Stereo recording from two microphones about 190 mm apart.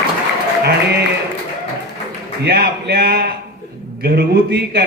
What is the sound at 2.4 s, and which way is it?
A man's voice, 60° right (ahead or behind).